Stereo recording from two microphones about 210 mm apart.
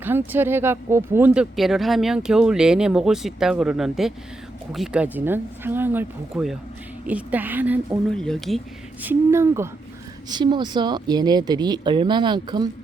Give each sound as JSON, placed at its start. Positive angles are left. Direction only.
{"t": 0.0, "sound": "speech", "side_deg": -10}
{"t": 8.1, "sound": "speech", "side_deg": 5}